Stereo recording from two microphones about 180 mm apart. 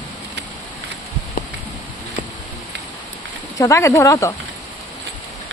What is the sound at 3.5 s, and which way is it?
Speech, 15° left (ahead or behind).